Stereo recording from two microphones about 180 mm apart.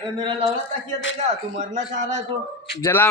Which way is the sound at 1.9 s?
45° right (ahead or behind).